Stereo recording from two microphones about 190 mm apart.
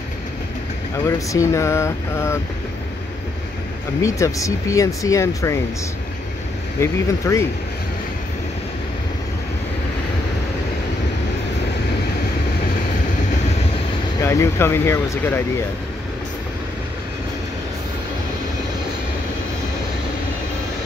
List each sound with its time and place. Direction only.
1.0 s speech: 15° left (ahead or behind)
4.0 s speech: 15° left (ahead or behind)
6.8 s speech: 15° left (ahead or behind)
14.2 s speech: 15° left (ahead or behind)